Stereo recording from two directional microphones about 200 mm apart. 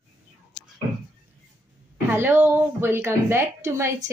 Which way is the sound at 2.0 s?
10° right (ahead or behind).